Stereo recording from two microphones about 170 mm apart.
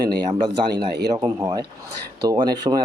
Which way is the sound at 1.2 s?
20° right (ahead or behind).